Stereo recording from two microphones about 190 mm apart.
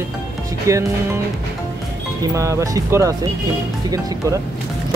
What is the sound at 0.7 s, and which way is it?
Speech, 15° right (ahead or behind).